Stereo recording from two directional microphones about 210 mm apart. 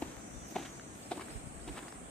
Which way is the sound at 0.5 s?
5° left (ahead or behind).